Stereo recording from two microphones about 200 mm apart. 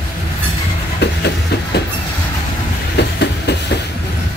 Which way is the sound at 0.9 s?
55° left (ahead or behind).